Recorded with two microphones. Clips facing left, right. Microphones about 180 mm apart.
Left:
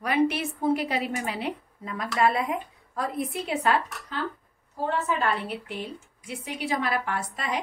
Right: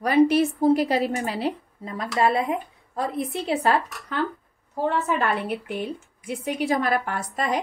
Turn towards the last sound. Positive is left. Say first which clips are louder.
# right 4 dB
turn(degrees=-45)  # may be behind; listen again after turning